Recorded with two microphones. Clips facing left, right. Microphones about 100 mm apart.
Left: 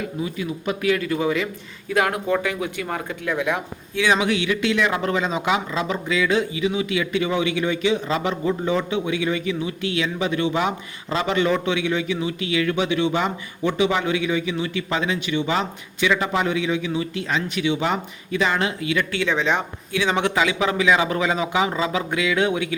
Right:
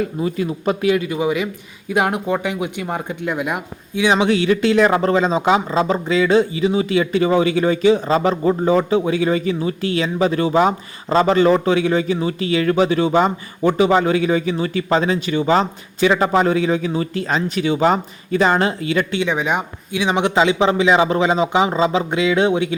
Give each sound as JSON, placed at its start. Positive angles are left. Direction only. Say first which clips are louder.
{"t": 0.0, "sound": "speech", "louder": "right 6 dB", "side_deg": -40}
{"t": 0.8, "sound": "a man's voice", "louder": "right 1 dB", "side_deg": -20}
{"t": 4.3, "sound": "speech", "louder": "right 6 dB", "side_deg": -35}
{"t": 19.1, "sound": "speech", "louder": "right 2 dB", "side_deg": -15}